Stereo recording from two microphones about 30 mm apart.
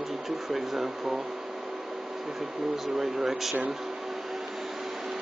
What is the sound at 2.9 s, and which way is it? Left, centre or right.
Speech, centre.